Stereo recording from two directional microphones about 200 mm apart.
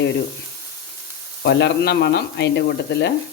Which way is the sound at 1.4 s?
60° left (ahead or behind).